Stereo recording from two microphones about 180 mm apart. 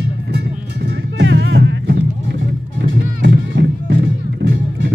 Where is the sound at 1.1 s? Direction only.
85° right.